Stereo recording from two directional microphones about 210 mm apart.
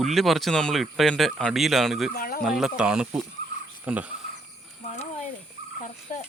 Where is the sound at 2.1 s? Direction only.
45° left (ahead or behind).